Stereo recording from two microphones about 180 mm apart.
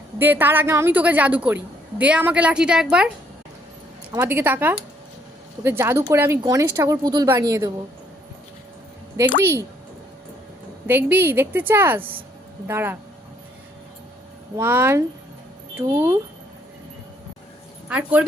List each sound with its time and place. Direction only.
0.2 s a woman's voice: 10° right (ahead or behind)
4.1 s a woman's voice: 15° right (ahead or behind)
9.4 s a woman's voice: 15° right (ahead or behind)
10.8 s a woman's voice: 10° right (ahead or behind)
14.5 s a woman's voice: 15° right (ahead or behind)
17.8 s speech: 5° right (ahead or behind)